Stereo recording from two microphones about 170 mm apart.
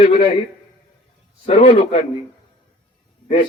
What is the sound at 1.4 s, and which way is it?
Speech, 35° left (ahead or behind).